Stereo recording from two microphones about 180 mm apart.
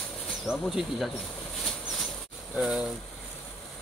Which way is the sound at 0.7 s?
Centre (ahead or behind).